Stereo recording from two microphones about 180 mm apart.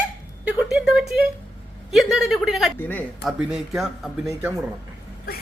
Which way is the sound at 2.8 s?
10° left (ahead or behind).